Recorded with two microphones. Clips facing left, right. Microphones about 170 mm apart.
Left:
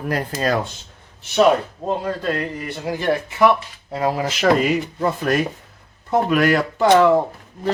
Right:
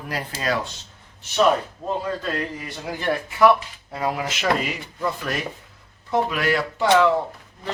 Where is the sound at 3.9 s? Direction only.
30° left (ahead or behind).